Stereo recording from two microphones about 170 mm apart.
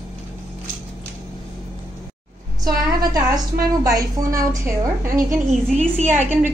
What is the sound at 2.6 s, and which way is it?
A woman's voice, 20° right (ahead or behind).